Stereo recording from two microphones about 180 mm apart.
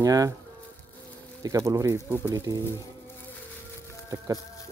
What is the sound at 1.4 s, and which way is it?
Speech, 20° right (ahead or behind).